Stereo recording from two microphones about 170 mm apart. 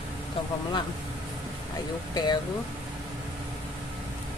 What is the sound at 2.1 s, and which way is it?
Speech, 25° left (ahead or behind).